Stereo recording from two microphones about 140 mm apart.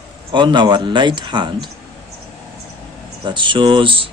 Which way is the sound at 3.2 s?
35° right (ahead or behind).